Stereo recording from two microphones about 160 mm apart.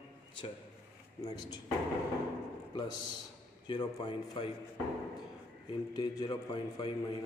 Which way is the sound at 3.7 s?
30° left (ahead or behind).